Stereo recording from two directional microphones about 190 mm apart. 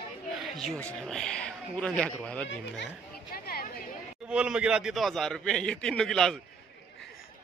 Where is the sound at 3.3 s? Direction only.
55° left (ahead or behind).